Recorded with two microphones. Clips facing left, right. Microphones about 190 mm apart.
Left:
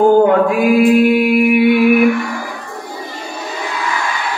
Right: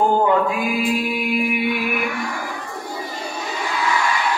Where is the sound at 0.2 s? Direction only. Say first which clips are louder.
Left 7 dB; 65° left (ahead or behind).